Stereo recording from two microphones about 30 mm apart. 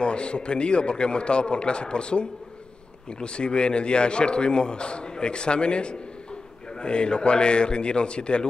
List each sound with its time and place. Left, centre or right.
0.0 s a man's voice: left